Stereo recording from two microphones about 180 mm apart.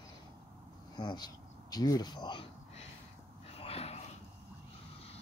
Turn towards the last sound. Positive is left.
turn(degrees=35)  # may be behind; listen again after turning